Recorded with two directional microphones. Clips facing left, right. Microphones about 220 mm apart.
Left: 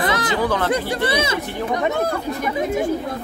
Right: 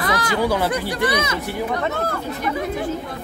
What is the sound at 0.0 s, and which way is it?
Chatter, 25° left (ahead or behind).